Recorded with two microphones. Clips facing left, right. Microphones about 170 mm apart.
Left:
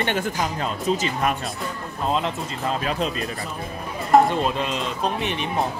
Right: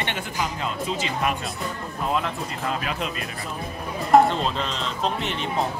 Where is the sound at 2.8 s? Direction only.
35° left (ahead or behind).